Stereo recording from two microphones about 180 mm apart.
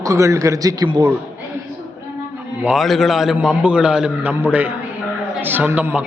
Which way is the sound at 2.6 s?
Centre (ahead or behind).